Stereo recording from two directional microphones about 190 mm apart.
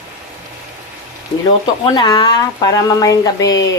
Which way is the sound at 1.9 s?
25° left (ahead or behind).